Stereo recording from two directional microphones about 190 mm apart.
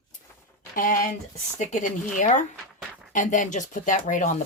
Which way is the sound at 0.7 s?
45° left (ahead or behind).